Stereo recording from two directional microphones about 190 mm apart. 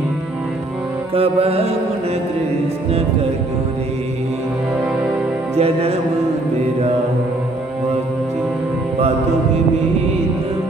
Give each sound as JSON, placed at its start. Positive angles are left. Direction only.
{"t": 1.1, "sound": "music", "side_deg": -30}
{"t": 5.6, "sound": "music", "side_deg": -30}